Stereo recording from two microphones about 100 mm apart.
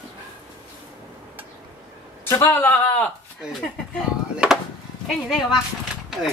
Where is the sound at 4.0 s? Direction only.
5° right (ahead or behind).